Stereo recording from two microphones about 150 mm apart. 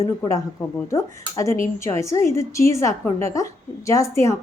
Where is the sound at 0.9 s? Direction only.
20° left (ahead or behind).